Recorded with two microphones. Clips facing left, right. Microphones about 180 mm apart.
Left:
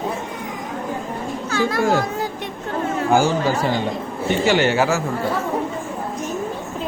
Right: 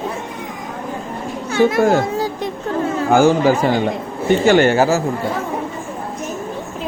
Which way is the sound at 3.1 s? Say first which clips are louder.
Right 6 dB; 55° right (ahead or behind).